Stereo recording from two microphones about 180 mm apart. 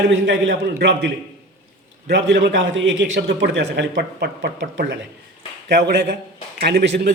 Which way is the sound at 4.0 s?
70° right (ahead or behind).